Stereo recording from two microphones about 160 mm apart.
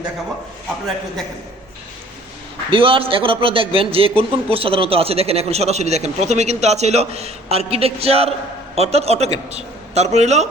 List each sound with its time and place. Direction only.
2.6 s a man's voice: 35° right (ahead or behind)